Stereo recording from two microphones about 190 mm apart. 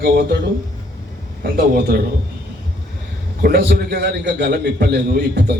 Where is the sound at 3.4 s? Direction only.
55° right (ahead or behind).